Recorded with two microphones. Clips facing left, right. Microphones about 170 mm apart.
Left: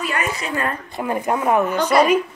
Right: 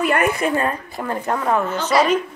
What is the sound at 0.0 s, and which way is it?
Speech, 55° right (ahead or behind).